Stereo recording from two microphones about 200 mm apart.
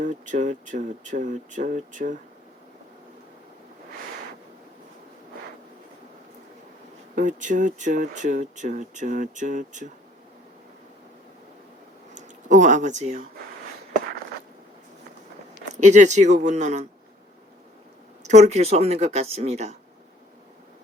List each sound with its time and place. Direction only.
0.0 s speech: 40° right (ahead or behind)
7.2 s speech: 40° right (ahead or behind)
12.1 s speech: 40° right (ahead or behind)
15.7 s speech: 35° right (ahead or behind)
18.2 s speech: 35° right (ahead or behind)